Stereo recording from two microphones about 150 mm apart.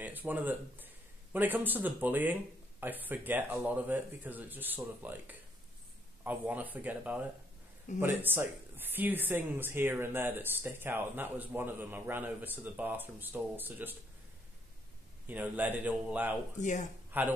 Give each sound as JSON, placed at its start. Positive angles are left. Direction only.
{"t": 0.0, "sound": "speech", "side_deg": -10}
{"t": 15.2, "sound": "speech", "side_deg": -10}
{"t": 16.5, "sound": "speech", "side_deg": 55}
{"t": 17.1, "sound": "speech", "side_deg": -10}